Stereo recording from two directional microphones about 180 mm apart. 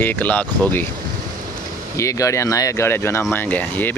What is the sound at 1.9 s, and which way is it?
Speech, 15° left (ahead or behind).